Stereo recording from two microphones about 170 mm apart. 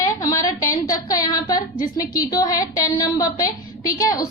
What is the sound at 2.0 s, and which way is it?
A woman's voice, 20° left (ahead or behind).